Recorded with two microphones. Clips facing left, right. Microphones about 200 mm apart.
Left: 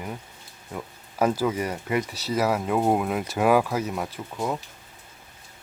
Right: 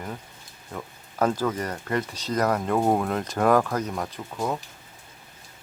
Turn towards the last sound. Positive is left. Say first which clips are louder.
# even
turn(degrees=5)  # may be behind; listen again after turning